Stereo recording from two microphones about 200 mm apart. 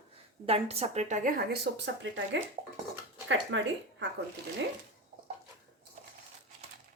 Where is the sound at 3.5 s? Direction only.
65° right (ahead or behind).